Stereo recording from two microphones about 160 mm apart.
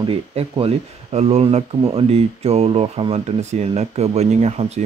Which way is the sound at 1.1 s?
40° right (ahead or behind).